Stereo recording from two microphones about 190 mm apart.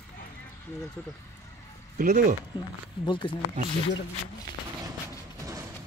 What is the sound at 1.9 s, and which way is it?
Speech, 40° right (ahead or behind).